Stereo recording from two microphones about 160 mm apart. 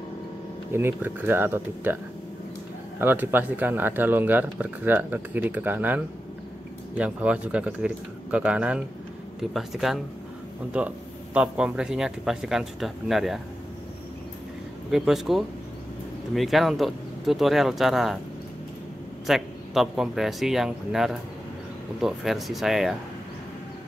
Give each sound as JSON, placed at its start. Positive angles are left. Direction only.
{"t": 0.7, "sound": "speech", "side_deg": -15}
{"t": 3.0, "sound": "speech", "side_deg": -10}
{"t": 14.9, "sound": "speech", "side_deg": -5}
{"t": 19.2, "sound": "speech", "side_deg": 0}